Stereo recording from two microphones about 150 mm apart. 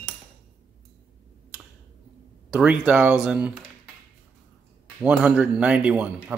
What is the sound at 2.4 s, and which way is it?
Speech, 5° right (ahead or behind).